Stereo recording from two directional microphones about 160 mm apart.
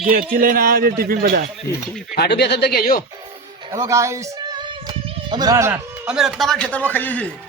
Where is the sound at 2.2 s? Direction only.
90° left; by 3.0 s 70° left (ahead or behind).